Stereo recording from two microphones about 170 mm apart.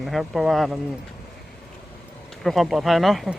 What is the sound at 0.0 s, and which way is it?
Speech, centre (ahead or behind).